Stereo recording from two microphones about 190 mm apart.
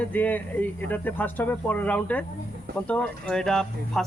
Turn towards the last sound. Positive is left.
turn(degrees=5)  # may be behind; listen again after turning